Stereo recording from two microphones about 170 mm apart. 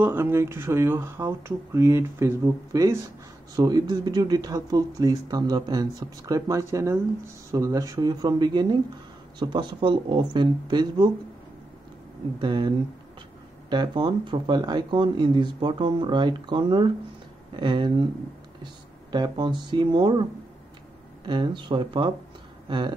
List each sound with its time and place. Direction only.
0.0 s speech: 15° right (ahead or behind)
12.4 s speech: 30° right (ahead or behind)
19.1 s speech: 25° right (ahead or behind)
21.3 s speech: 25° right (ahead or behind)